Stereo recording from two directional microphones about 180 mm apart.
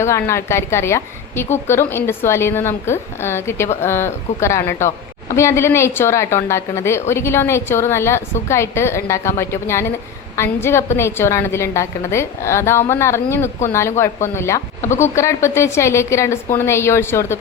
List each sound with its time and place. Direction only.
0.0 s a woman's voice: 15° left (ahead or behind)